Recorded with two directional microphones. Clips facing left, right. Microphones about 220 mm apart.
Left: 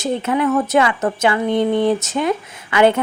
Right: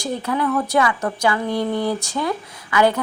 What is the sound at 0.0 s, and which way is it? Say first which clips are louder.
A woman's voice: left 4 dB; 20° left (ahead or behind).